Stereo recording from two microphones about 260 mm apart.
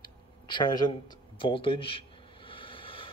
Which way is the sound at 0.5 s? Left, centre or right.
Centre.